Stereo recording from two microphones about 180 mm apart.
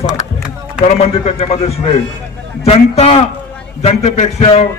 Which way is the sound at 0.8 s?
35° left (ahead or behind).